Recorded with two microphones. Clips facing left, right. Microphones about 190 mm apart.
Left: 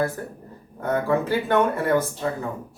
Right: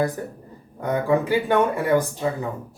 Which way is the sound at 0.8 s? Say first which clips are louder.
Right 1 dB; 15° right (ahead or behind).